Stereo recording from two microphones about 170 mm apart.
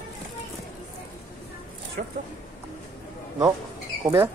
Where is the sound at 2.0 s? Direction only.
60° right (ahead or behind).